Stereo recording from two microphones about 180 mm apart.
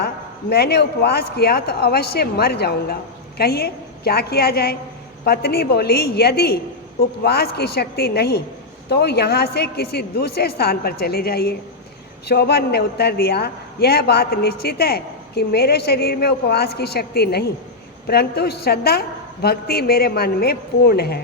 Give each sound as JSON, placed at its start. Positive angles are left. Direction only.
{"t": 0.5, "sound": "a man's voice", "side_deg": 65}